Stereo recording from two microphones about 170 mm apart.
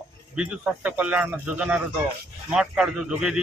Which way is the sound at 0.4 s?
5° right (ahead or behind).